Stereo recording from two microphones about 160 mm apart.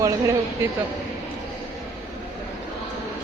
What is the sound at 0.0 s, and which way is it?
Speech, 20° right (ahead or behind).